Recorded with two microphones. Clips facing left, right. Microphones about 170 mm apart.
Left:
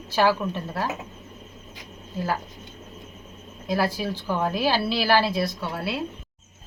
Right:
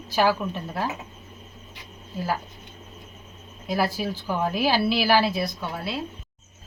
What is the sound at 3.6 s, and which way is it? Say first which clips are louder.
A woman's voice: even; 5° right (ahead or behind).